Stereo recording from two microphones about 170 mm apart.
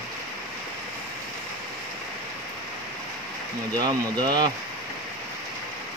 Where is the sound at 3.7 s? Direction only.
25° right (ahead or behind).